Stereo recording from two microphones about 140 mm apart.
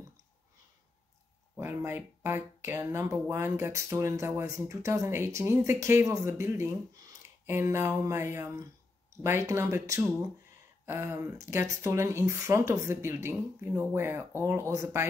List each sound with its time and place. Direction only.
1.6 s speech: 15° right (ahead or behind)